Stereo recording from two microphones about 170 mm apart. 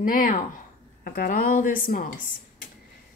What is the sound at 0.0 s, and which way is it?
Speech, 55° left (ahead or behind).